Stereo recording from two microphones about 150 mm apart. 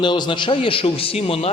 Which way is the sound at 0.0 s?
30° left (ahead or behind).